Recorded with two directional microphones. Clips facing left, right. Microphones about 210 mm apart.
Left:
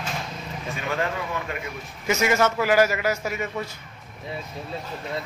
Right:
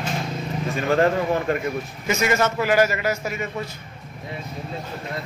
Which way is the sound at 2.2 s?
10° left (ahead or behind).